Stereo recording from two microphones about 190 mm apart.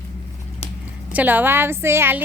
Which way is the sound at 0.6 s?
30° left (ahead or behind).